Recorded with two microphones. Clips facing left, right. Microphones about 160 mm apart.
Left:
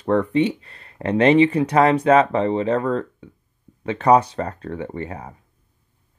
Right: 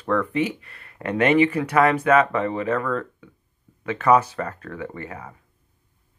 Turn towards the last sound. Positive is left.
turn(degrees=30)  # may be behind; listen again after turning